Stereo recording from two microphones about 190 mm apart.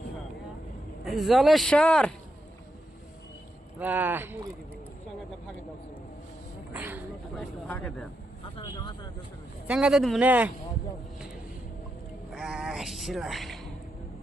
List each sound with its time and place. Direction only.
1.0 s speech: centre (ahead or behind)
3.8 s speech: 10° right (ahead or behind)
6.7 s a sound: 10° right (ahead or behind)
7.3 s speech: 5° left (ahead or behind)
8.5 s vehicle: 25° left (ahead or behind)
9.6 s speech: 5° right (ahead or behind)
12.3 s a sound: centre (ahead or behind)